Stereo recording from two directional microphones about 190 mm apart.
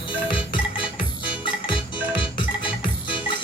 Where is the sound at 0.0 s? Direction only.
25° left (ahead or behind).